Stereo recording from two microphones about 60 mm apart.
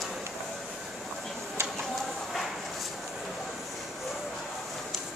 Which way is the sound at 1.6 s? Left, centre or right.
Right.